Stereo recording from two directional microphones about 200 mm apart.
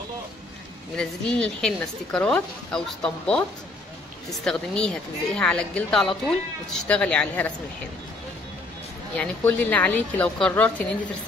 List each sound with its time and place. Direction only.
0.9 s a woman's voice: 5° left (ahead or behind)
9.1 s a woman's voice: 10° left (ahead or behind)